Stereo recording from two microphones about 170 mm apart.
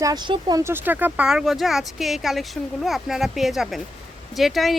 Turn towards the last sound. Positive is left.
turn(degrees=0)  # may be behind; listen again after turning